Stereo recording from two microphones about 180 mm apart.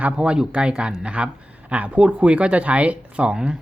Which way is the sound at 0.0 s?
5° right (ahead or behind).